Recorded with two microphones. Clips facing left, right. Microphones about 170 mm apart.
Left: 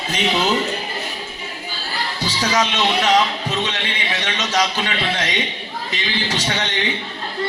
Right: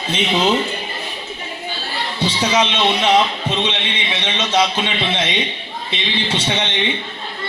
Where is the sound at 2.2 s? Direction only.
25° right (ahead or behind).